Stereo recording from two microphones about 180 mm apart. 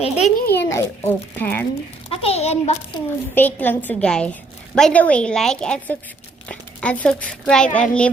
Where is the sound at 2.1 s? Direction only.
35° left (ahead or behind).